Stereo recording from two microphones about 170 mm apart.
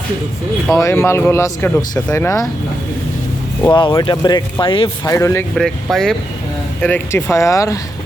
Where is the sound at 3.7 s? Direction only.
30° left (ahead or behind).